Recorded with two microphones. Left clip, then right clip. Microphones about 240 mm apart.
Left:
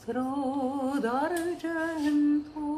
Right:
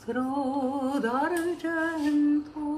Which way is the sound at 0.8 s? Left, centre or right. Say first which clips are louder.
Right 1 dB; centre.